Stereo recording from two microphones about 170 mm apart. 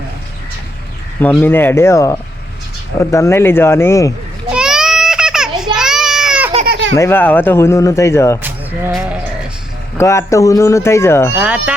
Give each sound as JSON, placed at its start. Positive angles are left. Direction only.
{"t": 1.2, "sound": "speech", "side_deg": 10}
{"t": 4.5, "sound": "a sound", "side_deg": -5}
{"t": 5.7, "sound": "baby cry", "side_deg": -5}
{"t": 6.7, "sound": "baby laughter", "side_deg": -90}
{"t": 6.9, "sound": "speech", "side_deg": 15}
{"t": 8.4, "sound": "a sound", "side_deg": -10}
{"t": 8.9, "sound": "speech", "side_deg": -5}
{"t": 10.0, "sound": "speech", "side_deg": 15}
{"t": 11.3, "sound": "speech", "side_deg": -5}